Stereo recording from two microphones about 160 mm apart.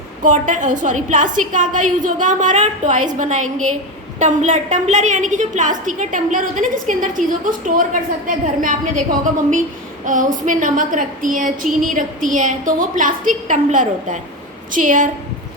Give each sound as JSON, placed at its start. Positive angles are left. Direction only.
{"t": 0.2, "sound": "a woman's voice", "side_deg": -55}
{"t": 4.2, "sound": "a woman's voice", "side_deg": -50}